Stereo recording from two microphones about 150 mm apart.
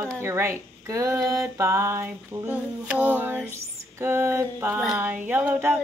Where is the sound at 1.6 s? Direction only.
20° right (ahead or behind).